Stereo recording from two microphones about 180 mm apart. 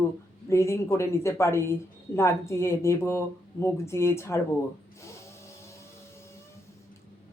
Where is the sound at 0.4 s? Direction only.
15° left (ahead or behind).